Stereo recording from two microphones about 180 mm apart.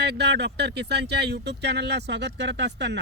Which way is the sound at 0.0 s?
70° right (ahead or behind).